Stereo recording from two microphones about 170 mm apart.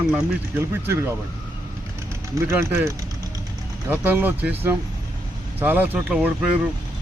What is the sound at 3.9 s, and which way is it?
Speech, 10° right (ahead or behind).